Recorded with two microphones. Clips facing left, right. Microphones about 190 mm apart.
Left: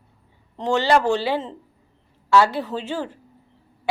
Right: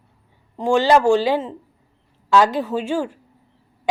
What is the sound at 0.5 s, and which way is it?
A woman's voice, 10° right (ahead or behind).